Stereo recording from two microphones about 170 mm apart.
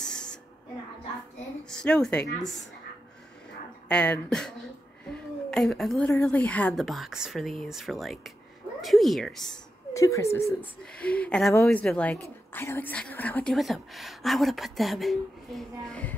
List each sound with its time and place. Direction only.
0.0 s a sound: 5° left (ahead or behind)
1.7 s a woman's voice: 5° left (ahead or behind)
3.9 s a woman's voice: 5° left (ahead or behind)
9.9 s a woman's voice: 20° left (ahead or behind)